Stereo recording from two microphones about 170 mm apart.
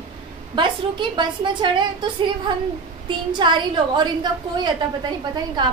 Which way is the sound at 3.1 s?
30° right (ahead or behind).